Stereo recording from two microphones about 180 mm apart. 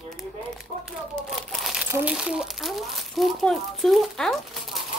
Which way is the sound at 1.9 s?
5° right (ahead or behind).